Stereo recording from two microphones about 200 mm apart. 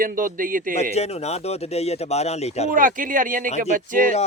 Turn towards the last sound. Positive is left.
turn(degrees=-45)  # may be behind; listen again after turning